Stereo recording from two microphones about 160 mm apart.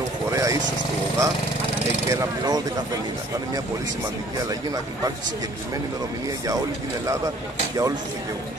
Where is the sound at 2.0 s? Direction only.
20° right (ahead or behind).